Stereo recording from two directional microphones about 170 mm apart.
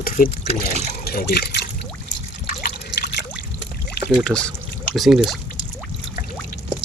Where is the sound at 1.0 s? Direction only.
65° left (ahead or behind).